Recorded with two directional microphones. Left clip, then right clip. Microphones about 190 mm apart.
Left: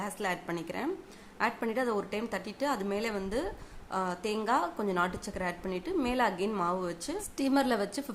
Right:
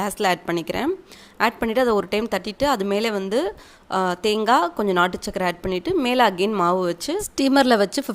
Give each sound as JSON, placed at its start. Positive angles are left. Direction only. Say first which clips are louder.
{"t": 0.0, "sound": "speech", "louder": "right 13 dB", "side_deg": -40}